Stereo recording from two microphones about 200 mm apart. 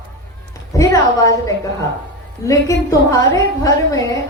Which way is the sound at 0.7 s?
15° left (ahead or behind).